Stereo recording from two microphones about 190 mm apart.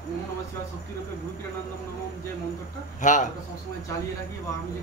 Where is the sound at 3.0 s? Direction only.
40° left (ahead or behind).